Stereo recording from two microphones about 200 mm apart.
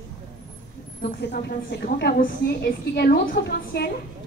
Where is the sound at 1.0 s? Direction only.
55° left (ahead or behind).